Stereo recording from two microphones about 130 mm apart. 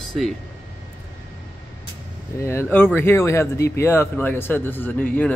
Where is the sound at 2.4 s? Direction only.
20° left (ahead or behind).